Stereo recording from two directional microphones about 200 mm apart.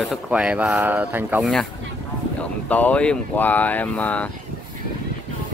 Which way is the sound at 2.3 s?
5° left (ahead or behind).